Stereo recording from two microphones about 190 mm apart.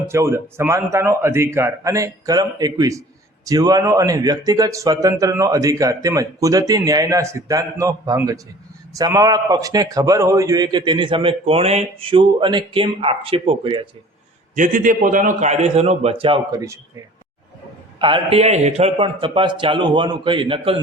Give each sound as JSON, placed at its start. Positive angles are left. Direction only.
{"t": 0.1, "sound": "a man's voice", "side_deg": -15}
{"t": 14.5, "sound": "a man's voice", "side_deg": -45}
{"t": 18.0, "sound": "a man's voice", "side_deg": -30}